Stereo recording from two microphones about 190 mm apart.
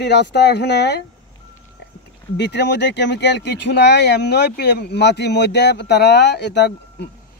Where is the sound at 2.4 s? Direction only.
65° left (ahead or behind).